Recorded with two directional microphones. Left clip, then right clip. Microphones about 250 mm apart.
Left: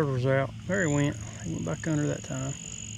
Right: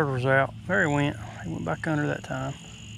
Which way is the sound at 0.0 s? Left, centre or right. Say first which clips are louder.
Right 4 dB; centre.